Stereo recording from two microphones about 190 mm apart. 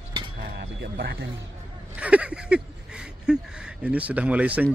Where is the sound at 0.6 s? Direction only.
60° right (ahead or behind).